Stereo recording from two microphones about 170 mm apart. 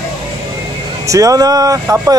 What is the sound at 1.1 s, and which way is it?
Speech, 20° right (ahead or behind).